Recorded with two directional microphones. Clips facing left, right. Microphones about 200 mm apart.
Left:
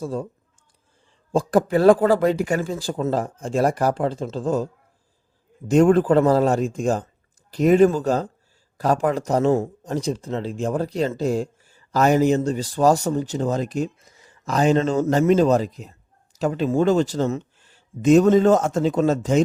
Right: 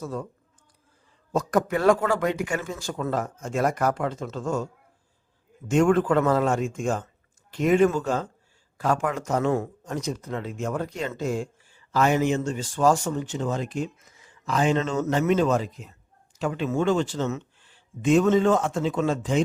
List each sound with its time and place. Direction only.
0.0 s speech: 30° left (ahead or behind)
1.3 s speech: 30° left (ahead or behind)